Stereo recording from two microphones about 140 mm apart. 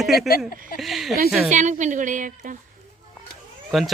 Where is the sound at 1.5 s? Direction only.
60° right (ahead or behind).